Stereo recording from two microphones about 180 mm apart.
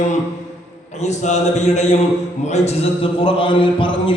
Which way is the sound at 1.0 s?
40° left (ahead or behind).